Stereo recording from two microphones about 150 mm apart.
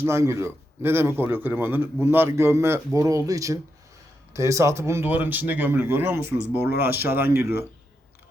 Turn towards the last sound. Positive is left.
turn(degrees=-20)  # may be behind; listen again after turning